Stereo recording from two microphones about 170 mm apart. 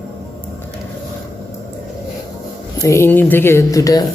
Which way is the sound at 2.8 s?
15° left (ahead or behind).